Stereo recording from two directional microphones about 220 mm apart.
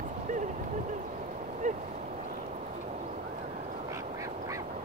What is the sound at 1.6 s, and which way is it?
Boat, 35° right (ahead or behind).